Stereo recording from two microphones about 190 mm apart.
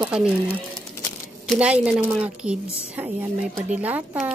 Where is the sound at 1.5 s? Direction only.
5° right (ahead or behind).